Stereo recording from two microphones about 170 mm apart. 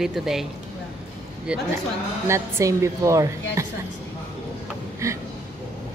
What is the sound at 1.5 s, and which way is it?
A woman's voice, 5° right (ahead or behind).